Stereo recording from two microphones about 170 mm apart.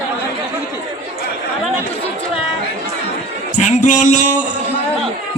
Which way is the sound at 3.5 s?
45° left (ahead or behind).